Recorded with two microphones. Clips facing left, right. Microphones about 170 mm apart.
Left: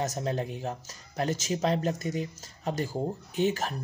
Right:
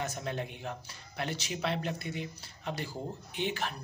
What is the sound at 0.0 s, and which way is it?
Speech, 40° left (ahead or behind).